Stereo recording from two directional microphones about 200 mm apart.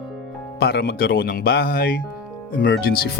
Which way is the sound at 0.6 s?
50° left (ahead or behind).